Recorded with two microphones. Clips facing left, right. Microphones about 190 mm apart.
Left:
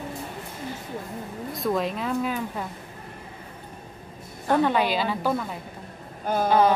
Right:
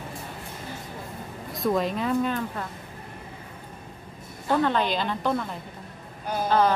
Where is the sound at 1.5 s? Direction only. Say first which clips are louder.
Right 1 dB; centre (ahead or behind).